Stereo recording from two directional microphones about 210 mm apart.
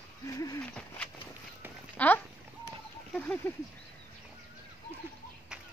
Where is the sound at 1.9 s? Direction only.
10° left (ahead or behind).